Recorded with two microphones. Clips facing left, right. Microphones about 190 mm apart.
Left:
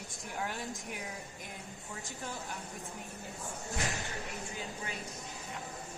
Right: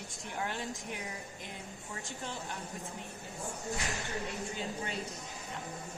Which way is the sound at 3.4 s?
Centre (ahead or behind).